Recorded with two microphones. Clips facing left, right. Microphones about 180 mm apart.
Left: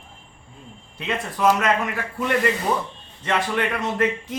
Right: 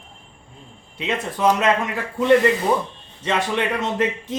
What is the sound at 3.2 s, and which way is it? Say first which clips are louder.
A man's voice: right 1 dB; 20° right (ahead or behind).